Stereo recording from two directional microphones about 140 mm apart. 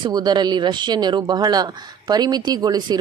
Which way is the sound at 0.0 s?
30° right (ahead or behind).